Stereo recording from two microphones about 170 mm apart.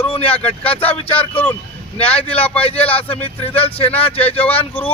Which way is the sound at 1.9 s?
35° left (ahead or behind).